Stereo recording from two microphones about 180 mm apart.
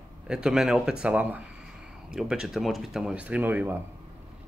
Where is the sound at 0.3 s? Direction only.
5° right (ahead or behind).